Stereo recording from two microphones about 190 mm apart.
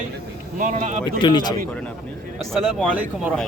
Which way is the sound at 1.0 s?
25° left (ahead or behind).